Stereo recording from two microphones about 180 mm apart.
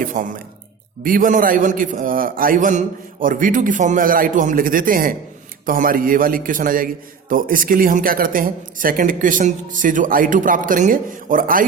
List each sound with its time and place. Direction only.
0.0 s a man's voice: 45° right (ahead or behind)